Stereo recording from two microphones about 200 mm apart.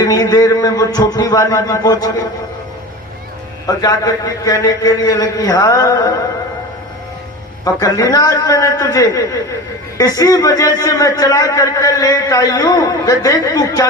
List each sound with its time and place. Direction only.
0.0 s a man's voice: 20° left (ahead or behind)
3.7 s a man's voice: 20° left (ahead or behind)
7.6 s a man's voice: 15° left (ahead or behind)